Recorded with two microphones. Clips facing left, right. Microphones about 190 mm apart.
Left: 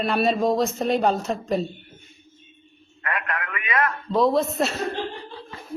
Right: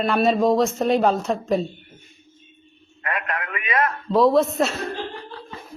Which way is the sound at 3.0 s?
25° right (ahead or behind).